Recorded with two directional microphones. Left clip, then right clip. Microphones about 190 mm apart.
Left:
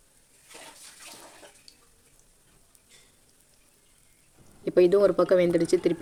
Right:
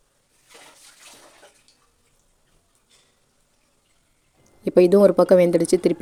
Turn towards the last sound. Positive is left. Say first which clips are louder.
# right 5 dB
turn(degrees=-50)  # may be behind; listen again after turning